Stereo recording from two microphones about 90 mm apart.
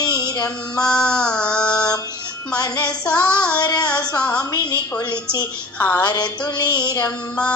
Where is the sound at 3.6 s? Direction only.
50° left (ahead or behind).